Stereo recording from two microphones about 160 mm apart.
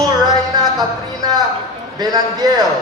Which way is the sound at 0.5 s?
25° right (ahead or behind).